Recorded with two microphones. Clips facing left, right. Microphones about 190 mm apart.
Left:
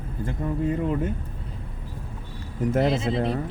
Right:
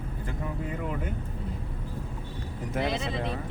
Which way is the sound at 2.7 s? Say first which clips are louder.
Left 7 dB; 50° left (ahead or behind).